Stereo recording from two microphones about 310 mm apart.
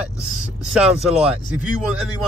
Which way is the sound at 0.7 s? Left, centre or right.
Centre.